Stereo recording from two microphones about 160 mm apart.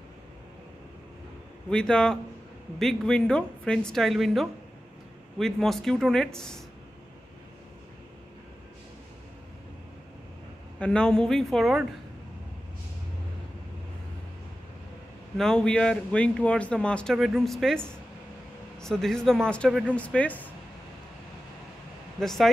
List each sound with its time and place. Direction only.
1.7 s speech: 5° left (ahead or behind)
10.8 s speech: 5° left (ahead or behind)
15.3 s speech: 5° left (ahead or behind)
22.2 s speech: centre (ahead or behind)